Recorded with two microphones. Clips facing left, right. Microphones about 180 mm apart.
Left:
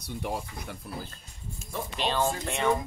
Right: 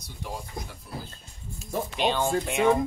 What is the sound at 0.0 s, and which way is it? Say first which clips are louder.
Speech: left 4 dB; 60° left (ahead or behind).